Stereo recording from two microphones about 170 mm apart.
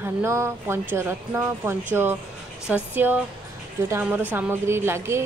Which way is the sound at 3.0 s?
10° right (ahead or behind).